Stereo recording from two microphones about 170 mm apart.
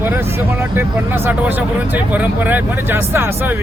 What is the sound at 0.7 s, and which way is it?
Speech, 15° right (ahead or behind).